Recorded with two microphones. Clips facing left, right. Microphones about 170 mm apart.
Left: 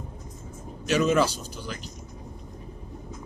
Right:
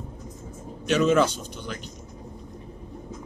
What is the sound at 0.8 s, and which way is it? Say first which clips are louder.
Speech: right 2 dB; 10° left (ahead or behind).